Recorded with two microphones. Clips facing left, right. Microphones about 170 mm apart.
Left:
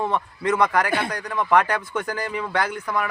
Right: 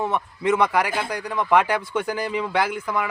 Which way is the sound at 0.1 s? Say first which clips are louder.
Right 1 dB; 10° right (ahead or behind).